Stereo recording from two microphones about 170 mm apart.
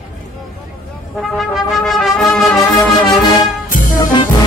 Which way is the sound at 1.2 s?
Centre (ahead or behind).